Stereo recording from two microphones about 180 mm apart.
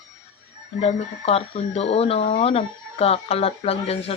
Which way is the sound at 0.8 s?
35° left (ahead or behind).